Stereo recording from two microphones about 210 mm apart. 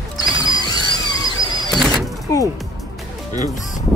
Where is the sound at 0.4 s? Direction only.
20° left (ahead or behind).